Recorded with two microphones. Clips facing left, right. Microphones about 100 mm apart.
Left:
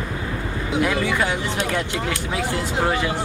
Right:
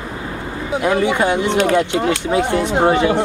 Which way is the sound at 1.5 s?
75° right (ahead or behind).